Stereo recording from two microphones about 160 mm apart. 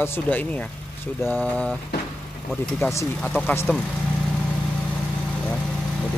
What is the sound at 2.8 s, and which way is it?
Music, 15° left (ahead or behind).